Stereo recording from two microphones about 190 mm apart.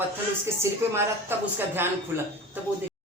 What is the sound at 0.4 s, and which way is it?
A woman's voice, 15° right (ahead or behind).